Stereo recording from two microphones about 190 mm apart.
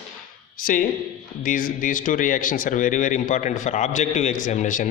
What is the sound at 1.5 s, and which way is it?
A man's voice, 45° left (ahead or behind).